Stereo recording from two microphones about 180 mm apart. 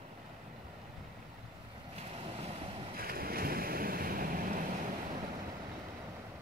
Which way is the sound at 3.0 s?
55° right (ahead or behind).